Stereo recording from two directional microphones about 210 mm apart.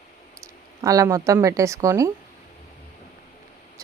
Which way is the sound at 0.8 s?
15° right (ahead or behind).